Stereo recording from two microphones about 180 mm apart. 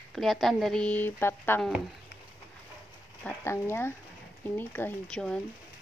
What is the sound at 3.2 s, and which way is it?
Speech, 15° left (ahead or behind).